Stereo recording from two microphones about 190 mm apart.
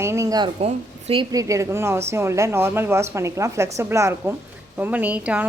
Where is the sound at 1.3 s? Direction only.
15° right (ahead or behind).